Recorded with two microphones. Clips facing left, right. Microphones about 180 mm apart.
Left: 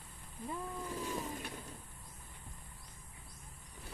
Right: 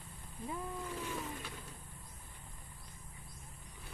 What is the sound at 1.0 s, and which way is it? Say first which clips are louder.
Boat: left 2 dB; 40° left (ahead or behind).